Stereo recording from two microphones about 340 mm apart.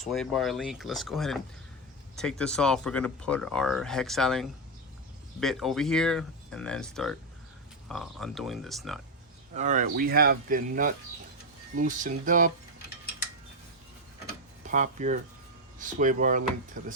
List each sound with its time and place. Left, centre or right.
0.0 s speech: centre
9.6 s speech: right
14.6 s speech: right